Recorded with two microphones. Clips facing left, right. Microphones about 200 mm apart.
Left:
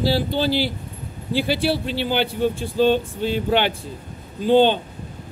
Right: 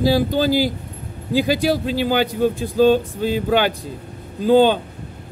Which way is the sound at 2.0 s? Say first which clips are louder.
Right 2 dB; 40° right (ahead or behind).